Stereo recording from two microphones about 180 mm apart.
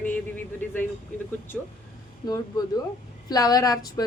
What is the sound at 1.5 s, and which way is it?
Speech, centre (ahead or behind).